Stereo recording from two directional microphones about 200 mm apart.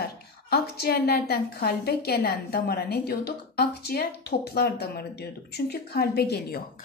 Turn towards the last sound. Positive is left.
turn(degrees=50)  # may be behind; listen again after turning